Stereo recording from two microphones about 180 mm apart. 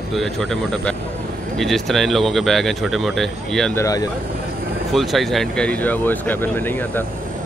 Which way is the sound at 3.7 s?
15° left (ahead or behind).